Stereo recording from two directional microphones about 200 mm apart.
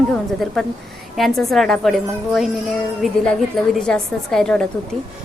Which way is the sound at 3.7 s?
5° left (ahead or behind).